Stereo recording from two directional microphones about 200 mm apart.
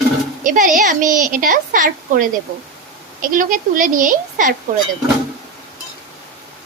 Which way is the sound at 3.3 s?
40° right (ahead or behind).